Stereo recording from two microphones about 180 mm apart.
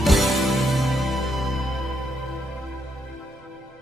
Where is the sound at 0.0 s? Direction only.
Centre (ahead or behind).